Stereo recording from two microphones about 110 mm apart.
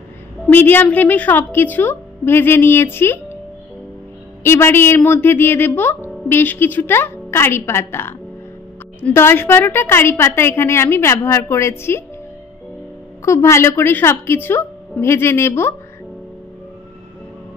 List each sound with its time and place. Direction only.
0.5 s speech: 20° left (ahead or behind)
4.4 s speech: 20° left (ahead or behind)
13.2 s speech: 25° left (ahead or behind)